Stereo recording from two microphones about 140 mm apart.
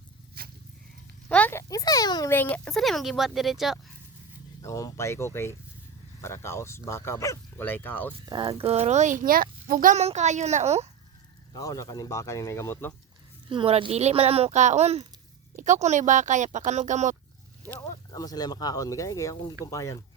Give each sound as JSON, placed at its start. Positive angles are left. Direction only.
{"t": 0.4, "sound": "a sound", "side_deg": -90}
{"t": 1.3, "sound": "a sound", "side_deg": 15}
{"t": 2.3, "sound": "speech", "side_deg": 15}
{"t": 2.6, "sound": "speech", "side_deg": 5}
{"t": 4.6, "sound": "speech", "side_deg": 25}
{"t": 8.3, "sound": "speech", "side_deg": -30}
{"t": 8.5, "sound": "a child's voice", "side_deg": -45}
{"t": 9.9, "sound": "a child's voice", "side_deg": -50}
{"t": 11.5, "sound": "speech", "side_deg": 25}
{"t": 13.5, "sound": "a child's voice", "side_deg": -40}
{"t": 15.5, "sound": "speech", "side_deg": -60}
{"t": 17.7, "sound": "speech", "side_deg": 25}